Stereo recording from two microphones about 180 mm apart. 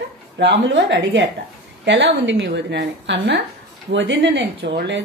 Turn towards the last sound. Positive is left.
turn(degrees=-75)  # may be behind; listen again after turning